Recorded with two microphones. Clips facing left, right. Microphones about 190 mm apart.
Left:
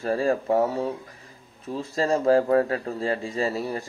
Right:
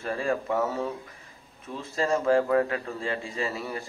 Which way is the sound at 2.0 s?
35° left (ahead or behind).